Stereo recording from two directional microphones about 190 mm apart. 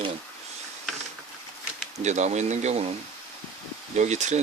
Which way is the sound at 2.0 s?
35° right (ahead or behind).